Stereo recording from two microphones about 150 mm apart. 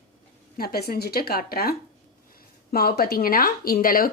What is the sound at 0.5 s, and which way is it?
Speech, 90° left.